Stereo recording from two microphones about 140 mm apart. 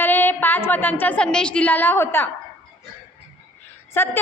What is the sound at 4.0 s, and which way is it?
Speech, 15° left (ahead or behind).